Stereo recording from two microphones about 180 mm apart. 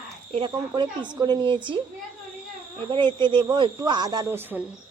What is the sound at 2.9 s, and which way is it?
Speech, 25° right (ahead or behind).